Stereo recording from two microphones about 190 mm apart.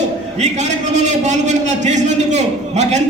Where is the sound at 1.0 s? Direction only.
40° right (ahead or behind).